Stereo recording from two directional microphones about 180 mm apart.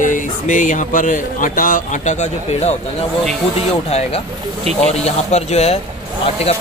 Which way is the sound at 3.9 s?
35° left (ahead or behind).